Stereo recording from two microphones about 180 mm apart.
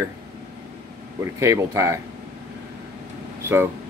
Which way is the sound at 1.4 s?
15° right (ahead or behind).